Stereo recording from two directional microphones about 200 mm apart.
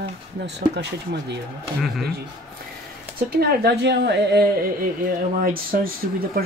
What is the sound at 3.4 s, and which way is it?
Speech, 50° right (ahead or behind).